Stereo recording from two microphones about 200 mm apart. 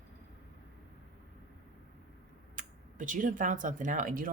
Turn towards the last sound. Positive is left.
turn(degrees=-45)  # may be behind; listen again after turning